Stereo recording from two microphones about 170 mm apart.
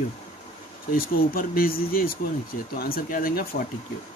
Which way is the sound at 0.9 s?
60° left (ahead or behind).